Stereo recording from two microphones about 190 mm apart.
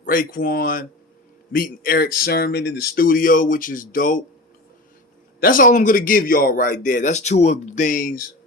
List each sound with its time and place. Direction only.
0.0 s speech: 45° left (ahead or behind)
5.4 s speech: 45° left (ahead or behind)